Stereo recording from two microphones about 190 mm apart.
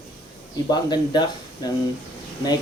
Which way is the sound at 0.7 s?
20° left (ahead or behind).